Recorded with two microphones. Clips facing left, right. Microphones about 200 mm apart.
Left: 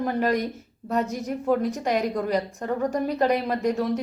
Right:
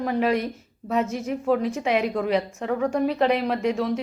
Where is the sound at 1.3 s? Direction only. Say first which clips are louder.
Even; centre (ahead or behind).